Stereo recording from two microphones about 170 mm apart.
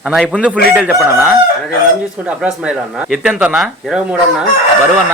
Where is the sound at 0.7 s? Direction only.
5° right (ahead or behind).